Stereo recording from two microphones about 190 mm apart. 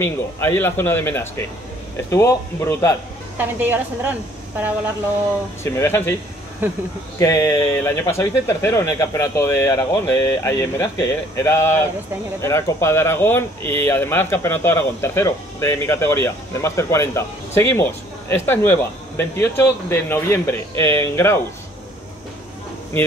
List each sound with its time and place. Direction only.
0.0 s speech: 10° left (ahead or behind)
3.3 s a woman's voice: 10° right (ahead or behind)
5.6 s speech: 15° left (ahead or behind)
7.2 s speech: 15° left (ahead or behind)